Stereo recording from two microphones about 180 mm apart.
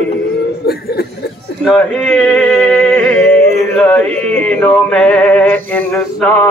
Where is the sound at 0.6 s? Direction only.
60° left (ahead or behind).